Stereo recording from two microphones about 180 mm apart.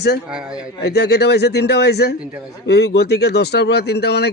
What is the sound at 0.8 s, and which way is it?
A man's voice, 65° left (ahead or behind).